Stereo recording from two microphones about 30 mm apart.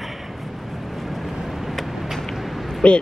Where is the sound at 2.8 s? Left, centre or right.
Left.